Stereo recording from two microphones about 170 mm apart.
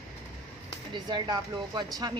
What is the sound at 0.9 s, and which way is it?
Speech, 25° right (ahead or behind).